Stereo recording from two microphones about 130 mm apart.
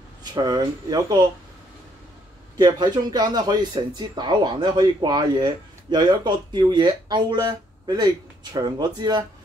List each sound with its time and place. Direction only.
0.2 s speech: 30° right (ahead or behind)
2.5 s speech: 30° right (ahead or behind)